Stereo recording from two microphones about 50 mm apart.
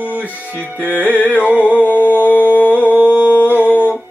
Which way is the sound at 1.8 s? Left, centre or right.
Left.